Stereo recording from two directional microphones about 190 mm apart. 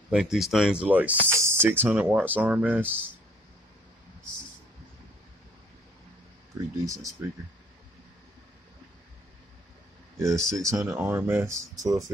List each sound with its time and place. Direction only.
0.1 s speech: 5° right (ahead or behind)
6.8 s speech: 15° right (ahead or behind)
10.1 s speech: 15° right (ahead or behind)